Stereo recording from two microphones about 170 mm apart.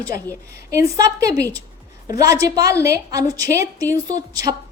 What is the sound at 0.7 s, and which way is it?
A woman's voice, 20° right (ahead or behind).